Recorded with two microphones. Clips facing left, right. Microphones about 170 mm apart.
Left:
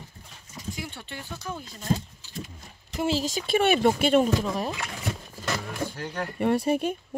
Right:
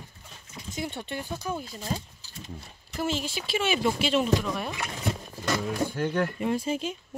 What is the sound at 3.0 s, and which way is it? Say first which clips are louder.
Speech: left 4 dB; 35° left (ahead or behind).